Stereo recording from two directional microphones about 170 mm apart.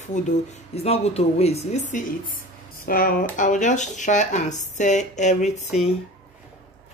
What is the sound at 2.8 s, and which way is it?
Speech, 60° left (ahead or behind).